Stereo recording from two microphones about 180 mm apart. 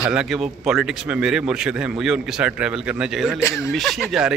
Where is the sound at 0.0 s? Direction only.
5° right (ahead or behind).